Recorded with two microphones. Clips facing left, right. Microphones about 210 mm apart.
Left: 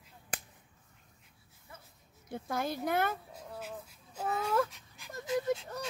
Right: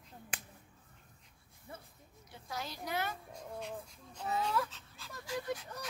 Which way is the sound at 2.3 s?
55° left (ahead or behind).